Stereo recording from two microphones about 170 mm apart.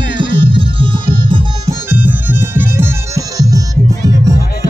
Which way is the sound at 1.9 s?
10° right (ahead or behind).